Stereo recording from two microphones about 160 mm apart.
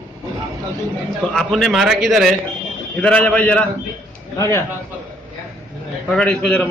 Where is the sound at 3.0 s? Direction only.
10° left (ahead or behind).